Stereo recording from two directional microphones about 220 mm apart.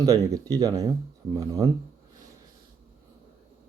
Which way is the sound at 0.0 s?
15° right (ahead or behind).